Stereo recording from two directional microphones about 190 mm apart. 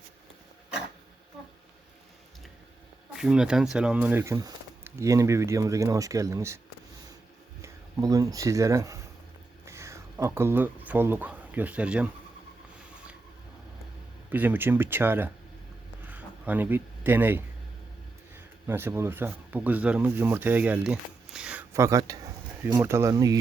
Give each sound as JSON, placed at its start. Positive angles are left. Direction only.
{"t": 3.2, "sound": "speech", "side_deg": -5}
{"t": 7.6, "sound": "speech", "side_deg": -20}
{"t": 14.3, "sound": "speech", "side_deg": -10}
{"t": 16.0, "sound": "a sound", "side_deg": -10}
{"t": 18.3, "sound": "speech", "side_deg": -10}